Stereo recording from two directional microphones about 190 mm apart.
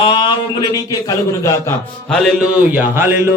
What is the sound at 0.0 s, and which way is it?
A man's voice, 25° left (ahead or behind).